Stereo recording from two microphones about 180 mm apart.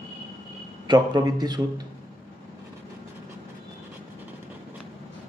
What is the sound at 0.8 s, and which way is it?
Speech, 20° right (ahead or behind).